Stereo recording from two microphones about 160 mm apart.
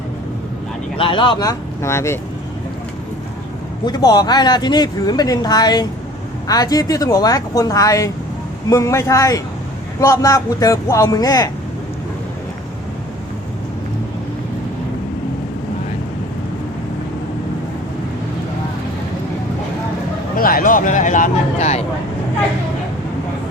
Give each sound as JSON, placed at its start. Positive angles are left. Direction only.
{"t": 0.9, "sound": "speech", "side_deg": 30}
{"t": 3.8, "sound": "speech", "side_deg": 25}
{"t": 20.3, "sound": "speech", "side_deg": 65}